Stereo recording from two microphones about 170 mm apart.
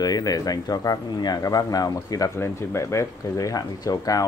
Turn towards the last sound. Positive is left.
turn(degrees=20)  # may be behind; listen again after turning